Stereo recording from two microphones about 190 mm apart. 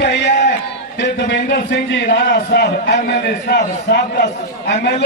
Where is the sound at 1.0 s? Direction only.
55° left (ahead or behind).